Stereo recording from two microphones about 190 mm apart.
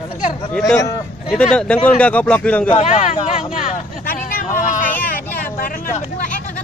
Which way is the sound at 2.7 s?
35° left (ahead or behind).